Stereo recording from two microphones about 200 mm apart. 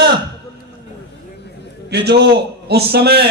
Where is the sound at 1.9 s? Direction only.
55° right (ahead or behind).